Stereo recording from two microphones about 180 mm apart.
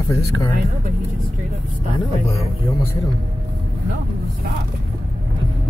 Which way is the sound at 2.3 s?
15° left (ahead or behind).